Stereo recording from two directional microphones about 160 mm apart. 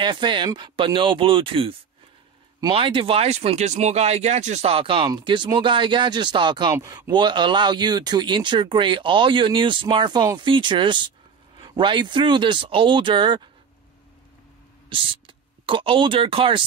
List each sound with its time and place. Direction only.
0.0 s speech: 30° right (ahead or behind)
14.9 s speech: 30° right (ahead or behind)